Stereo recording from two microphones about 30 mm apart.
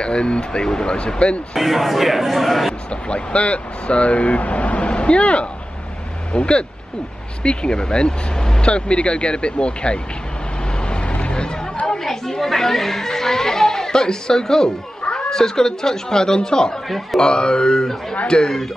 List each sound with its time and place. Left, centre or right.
0.0 s speech: left
1.6 s speech: centre
2.9 s speech: left
4.9 s speech: left
10.8 s vehicle: left
12.0 s speech: centre; by 18.6 s left